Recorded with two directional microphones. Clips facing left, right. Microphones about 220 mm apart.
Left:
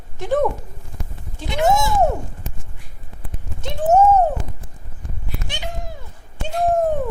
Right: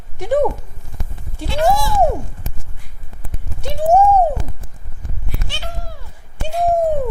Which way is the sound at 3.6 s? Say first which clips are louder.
Right 2 dB; 10° right (ahead or behind).